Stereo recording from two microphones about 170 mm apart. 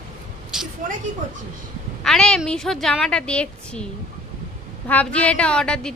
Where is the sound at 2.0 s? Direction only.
5° left (ahead or behind).